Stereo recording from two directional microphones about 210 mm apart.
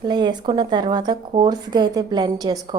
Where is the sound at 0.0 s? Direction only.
20° right (ahead or behind).